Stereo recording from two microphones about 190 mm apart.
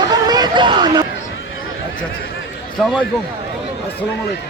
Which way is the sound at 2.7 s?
Centre (ahead or behind).